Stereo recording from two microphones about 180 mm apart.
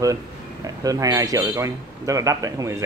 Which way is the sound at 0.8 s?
20° right (ahead or behind).